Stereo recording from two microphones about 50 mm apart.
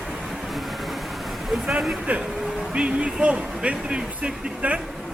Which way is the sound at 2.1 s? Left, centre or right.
Right.